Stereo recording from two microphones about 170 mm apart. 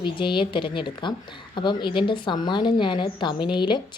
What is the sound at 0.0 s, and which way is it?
A woman's voice, 30° left (ahead or behind).